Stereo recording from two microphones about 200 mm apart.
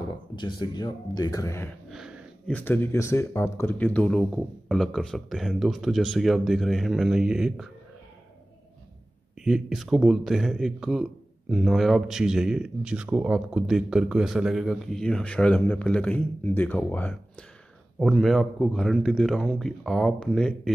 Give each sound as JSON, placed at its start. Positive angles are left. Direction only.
{"t": 0.4, "sound": "speech", "side_deg": 20}
{"t": 1.9, "sound": "speech", "side_deg": 0}
{"t": 9.4, "sound": "speech", "side_deg": 0}